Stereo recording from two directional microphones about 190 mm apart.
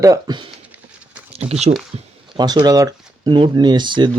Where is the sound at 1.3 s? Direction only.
35° right (ahead or behind).